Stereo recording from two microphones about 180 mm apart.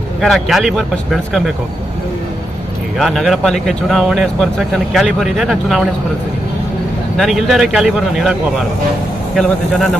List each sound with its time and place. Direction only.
0.2 s speech: centre (ahead or behind)
3.0 s speech: centre (ahead or behind)
7.2 s speech: centre (ahead or behind)